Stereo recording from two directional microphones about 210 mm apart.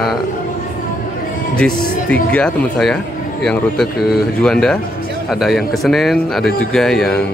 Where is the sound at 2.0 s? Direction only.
5° left (ahead or behind).